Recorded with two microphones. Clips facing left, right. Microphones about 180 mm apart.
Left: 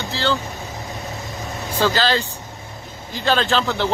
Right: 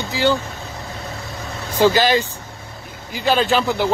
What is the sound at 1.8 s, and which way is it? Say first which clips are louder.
Speech: right 4 dB; 15° right (ahead or behind).